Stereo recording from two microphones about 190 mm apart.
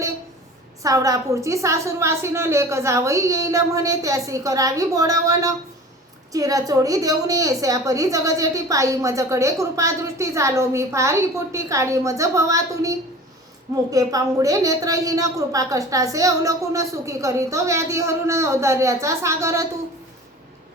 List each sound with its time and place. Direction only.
0.8 s a woman's voice: 15° right (ahead or behind)